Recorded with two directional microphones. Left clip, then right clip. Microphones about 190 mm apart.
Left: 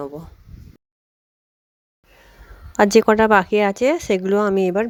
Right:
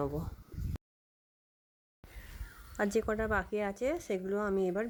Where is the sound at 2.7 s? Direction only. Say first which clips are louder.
Left 19 dB; 45° left (ahead or behind).